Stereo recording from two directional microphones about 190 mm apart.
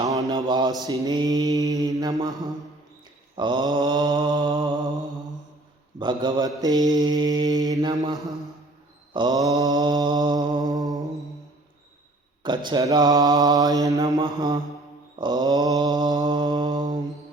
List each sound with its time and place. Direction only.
0.0 s mantra: 20° right (ahead or behind)
3.3 s mantra: 25° right (ahead or behind)
6.0 s mantra: 25° right (ahead or behind)
12.4 s mantra: 25° right (ahead or behind)